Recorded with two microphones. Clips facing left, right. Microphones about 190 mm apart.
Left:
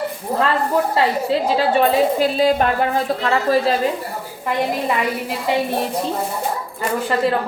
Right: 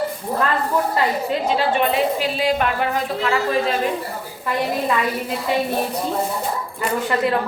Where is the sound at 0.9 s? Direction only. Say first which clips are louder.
Left 3 dB; 35° left (ahead or behind).